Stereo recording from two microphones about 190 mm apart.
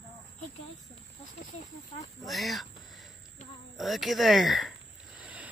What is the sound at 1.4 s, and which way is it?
Speech, 45° left (ahead or behind).